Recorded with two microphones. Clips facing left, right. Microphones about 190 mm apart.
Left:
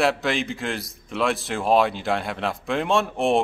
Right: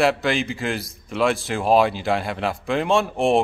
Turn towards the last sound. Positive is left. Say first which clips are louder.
# right 2 dB
turn(degrees=0)  # may be behind; listen again after turning